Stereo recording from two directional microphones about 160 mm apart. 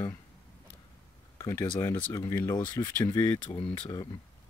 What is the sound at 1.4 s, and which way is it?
Speech, 15° left (ahead or behind).